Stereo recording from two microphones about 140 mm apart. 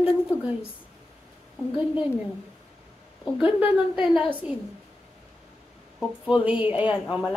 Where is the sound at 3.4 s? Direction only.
10° right (ahead or behind).